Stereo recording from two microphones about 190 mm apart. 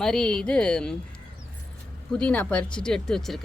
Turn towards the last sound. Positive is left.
turn(degrees=0)  # may be behind; listen again after turning